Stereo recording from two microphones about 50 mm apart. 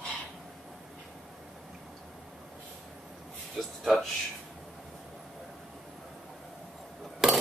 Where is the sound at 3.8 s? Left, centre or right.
Centre.